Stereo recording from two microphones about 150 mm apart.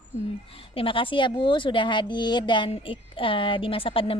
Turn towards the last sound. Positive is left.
turn(degrees=35)  # may be behind; listen again after turning